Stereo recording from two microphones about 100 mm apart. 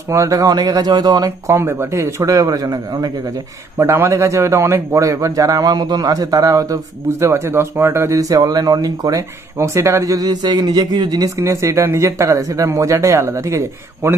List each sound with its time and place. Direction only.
0.1 s a man's voice: 30° right (ahead or behind)
1.6 s a man's voice: 25° right (ahead or behind); by 3.1 s 40° right (ahead or behind)
3.7 s a man's voice: 25° right (ahead or behind); by 9.2 s 40° right (ahead or behind)
9.6 s a man's voice: 30° right (ahead or behind)